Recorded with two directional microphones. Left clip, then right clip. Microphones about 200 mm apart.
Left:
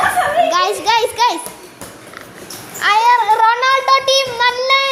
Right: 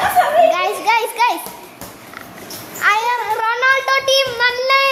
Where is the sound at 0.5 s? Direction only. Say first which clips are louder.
Left 2 dB; 5° left (ahead or behind).